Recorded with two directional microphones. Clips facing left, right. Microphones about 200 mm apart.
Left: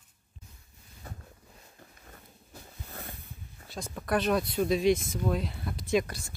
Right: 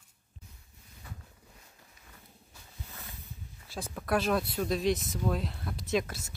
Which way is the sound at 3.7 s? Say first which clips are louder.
Left 1 dB; centre (ahead or behind).